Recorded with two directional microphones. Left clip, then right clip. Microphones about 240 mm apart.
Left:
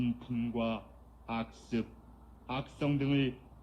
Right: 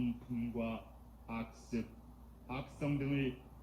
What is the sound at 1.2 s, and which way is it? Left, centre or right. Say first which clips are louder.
A man's voice: left 7 dB; centre.